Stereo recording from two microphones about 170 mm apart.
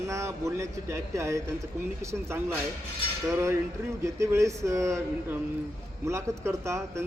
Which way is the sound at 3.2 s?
15° right (ahead or behind).